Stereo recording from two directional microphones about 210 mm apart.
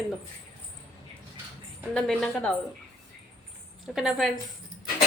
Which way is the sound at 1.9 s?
5° left (ahead or behind).